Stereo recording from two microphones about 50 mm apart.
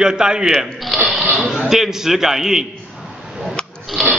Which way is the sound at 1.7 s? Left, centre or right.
Centre.